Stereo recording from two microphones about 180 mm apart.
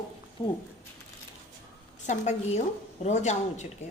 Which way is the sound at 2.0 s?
40° left (ahead or behind).